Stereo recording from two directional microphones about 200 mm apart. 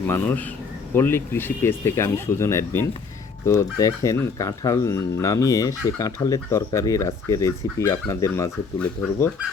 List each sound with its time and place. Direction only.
0.1 s speech: 10° left (ahead or behind)